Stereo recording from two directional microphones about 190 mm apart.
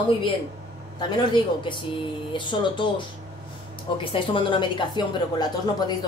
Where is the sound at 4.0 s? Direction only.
25° left (ahead or behind).